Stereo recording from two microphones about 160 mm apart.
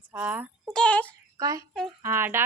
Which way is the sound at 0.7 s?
5° left (ahead or behind).